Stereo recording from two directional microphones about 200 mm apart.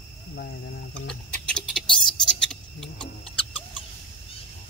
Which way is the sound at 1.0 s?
5° left (ahead or behind).